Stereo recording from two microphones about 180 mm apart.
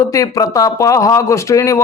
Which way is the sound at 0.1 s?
20° left (ahead or behind).